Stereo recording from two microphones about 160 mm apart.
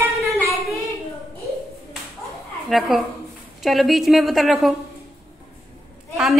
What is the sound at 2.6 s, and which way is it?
A woman's voice, centre (ahead or behind).